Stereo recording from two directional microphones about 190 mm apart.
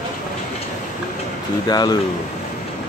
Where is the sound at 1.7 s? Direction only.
20° left (ahead or behind).